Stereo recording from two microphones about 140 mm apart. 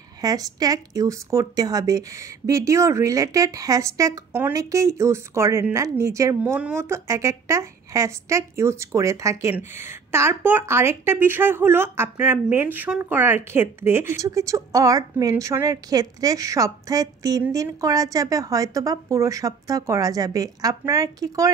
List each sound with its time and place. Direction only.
0.2 s speech: 25° right (ahead or behind)